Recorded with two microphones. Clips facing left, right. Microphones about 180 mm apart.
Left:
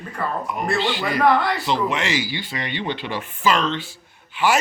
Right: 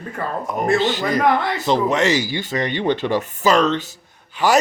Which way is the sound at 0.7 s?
45° right (ahead or behind).